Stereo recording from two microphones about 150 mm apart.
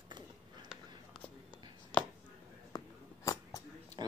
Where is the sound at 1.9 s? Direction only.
10° left (ahead or behind).